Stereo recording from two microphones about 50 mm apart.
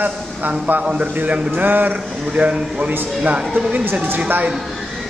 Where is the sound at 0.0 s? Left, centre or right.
Right.